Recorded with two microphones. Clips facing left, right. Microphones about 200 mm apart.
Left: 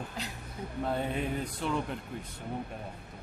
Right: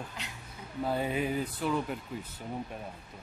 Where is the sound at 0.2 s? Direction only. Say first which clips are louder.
Left 5 dB; 35° left (ahead or behind).